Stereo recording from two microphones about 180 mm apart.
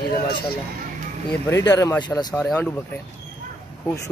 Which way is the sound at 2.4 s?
5° left (ahead or behind).